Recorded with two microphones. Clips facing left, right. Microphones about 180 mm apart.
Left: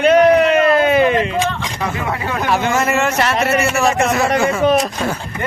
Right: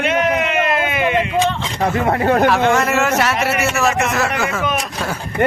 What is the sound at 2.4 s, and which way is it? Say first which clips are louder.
Speech: right 2 dB; centre (ahead or behind).